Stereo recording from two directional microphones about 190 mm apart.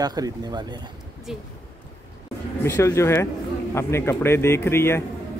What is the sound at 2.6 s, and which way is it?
A man's voice, 15° left (ahead or behind).